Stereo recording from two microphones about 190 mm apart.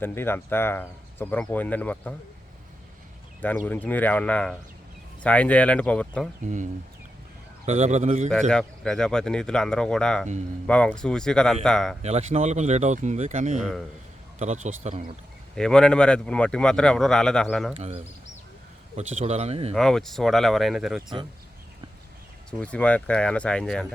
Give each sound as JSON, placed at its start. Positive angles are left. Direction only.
{"t": 0.0, "sound": "speech", "side_deg": 10}
{"t": 3.4, "sound": "speech", "side_deg": 10}
{"t": 6.4, "sound": "speech", "side_deg": -40}
{"t": 8.4, "sound": "speech", "side_deg": 5}
{"t": 12.0, "sound": "speech", "side_deg": -35}
{"t": 13.6, "sound": "speech", "side_deg": 0}
{"t": 14.3, "sound": "speech", "side_deg": -40}
{"t": 15.5, "sound": "speech", "side_deg": 5}
{"t": 17.7, "sound": "speech", "side_deg": -30}
{"t": 19.7, "sound": "speech", "side_deg": 0}
{"t": 22.4, "sound": "speech", "side_deg": 5}